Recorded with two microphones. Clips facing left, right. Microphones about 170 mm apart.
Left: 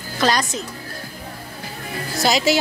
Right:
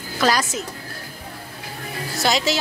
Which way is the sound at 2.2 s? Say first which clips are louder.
Left 3 dB; 5° left (ahead or behind).